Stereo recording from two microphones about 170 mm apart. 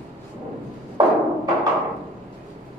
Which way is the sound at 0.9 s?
20° right (ahead or behind).